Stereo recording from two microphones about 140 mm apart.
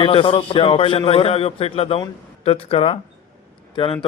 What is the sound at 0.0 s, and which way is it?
A man's voice, 40° left (ahead or behind).